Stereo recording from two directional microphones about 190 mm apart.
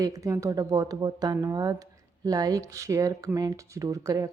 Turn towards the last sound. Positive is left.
turn(degrees=-15)  # may be behind; listen again after turning